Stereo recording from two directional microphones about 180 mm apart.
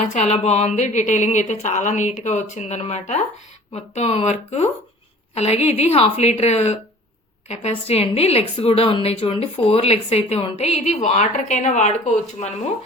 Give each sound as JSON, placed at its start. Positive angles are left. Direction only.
{"t": 0.1, "sound": "a woman's voice", "side_deg": 35}